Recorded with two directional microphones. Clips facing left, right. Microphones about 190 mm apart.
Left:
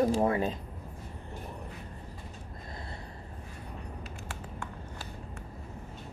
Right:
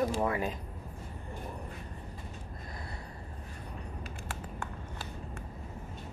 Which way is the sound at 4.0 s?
50° right (ahead or behind).